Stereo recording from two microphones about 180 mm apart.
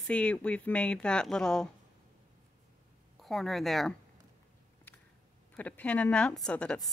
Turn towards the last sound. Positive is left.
turn(degrees=5)  # may be behind; listen again after turning